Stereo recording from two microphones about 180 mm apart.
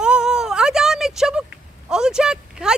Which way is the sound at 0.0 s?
5° right (ahead or behind).